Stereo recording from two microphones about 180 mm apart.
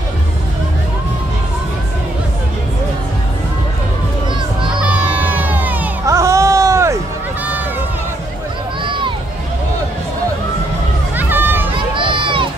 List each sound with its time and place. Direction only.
5.4 s music: 10° right (ahead or behind)
8.8 s music: 25° right (ahead or behind)
11.1 s a sound: 10° right (ahead or behind)
12.0 s run: 30° right (ahead or behind)